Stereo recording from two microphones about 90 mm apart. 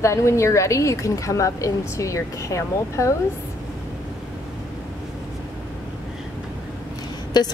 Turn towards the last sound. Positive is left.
turn(degrees=50)  # may be behind; listen again after turning